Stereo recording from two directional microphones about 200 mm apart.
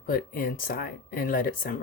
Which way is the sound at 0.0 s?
45° left (ahead or behind).